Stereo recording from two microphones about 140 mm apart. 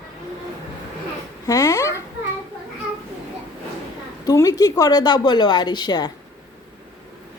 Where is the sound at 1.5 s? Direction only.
25° left (ahead or behind).